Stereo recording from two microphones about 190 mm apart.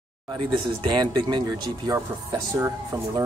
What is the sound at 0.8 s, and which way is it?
A man's voice, 25° right (ahead or behind).